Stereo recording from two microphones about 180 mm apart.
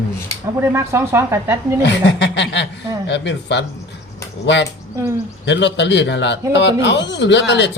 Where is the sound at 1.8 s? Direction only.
75° left (ahead or behind).